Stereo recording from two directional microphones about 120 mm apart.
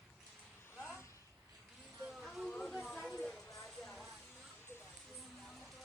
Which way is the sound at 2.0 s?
5° right (ahead or behind).